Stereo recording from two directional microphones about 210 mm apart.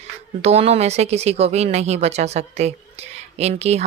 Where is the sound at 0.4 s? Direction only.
30° right (ahead or behind).